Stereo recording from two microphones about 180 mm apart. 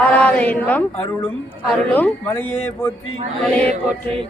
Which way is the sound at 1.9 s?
10° left (ahead or behind).